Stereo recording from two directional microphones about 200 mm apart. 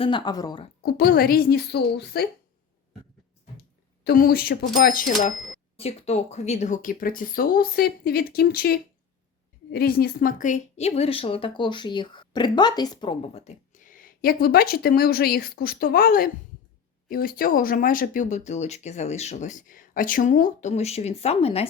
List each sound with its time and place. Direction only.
0.0 s a woman's voice: 20° left (ahead or behind)
0.8 s speech: 50° left (ahead or behind)
4.0 s speech: 45° left (ahead or behind)
5.7 s speech: 30° left (ahead or behind)